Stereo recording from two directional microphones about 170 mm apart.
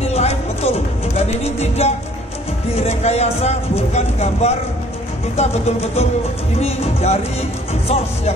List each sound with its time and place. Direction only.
0.0 s music: 40° left (ahead or behind)
2.7 s speech: 40° left (ahead or behind)